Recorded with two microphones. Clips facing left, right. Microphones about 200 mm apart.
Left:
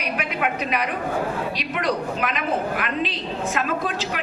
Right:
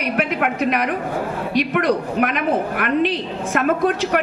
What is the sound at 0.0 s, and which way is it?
A woman's voice, 55° right (ahead or behind).